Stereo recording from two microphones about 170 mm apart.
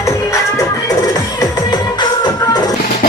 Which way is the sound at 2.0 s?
25° left (ahead or behind).